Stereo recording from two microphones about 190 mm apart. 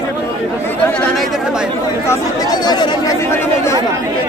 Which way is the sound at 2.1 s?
20° left (ahead or behind).